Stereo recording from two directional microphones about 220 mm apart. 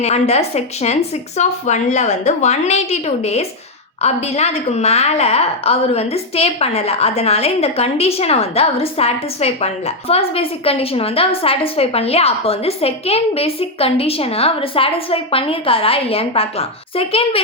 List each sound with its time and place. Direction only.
0.0 s a woman's voice: 30° left (ahead or behind)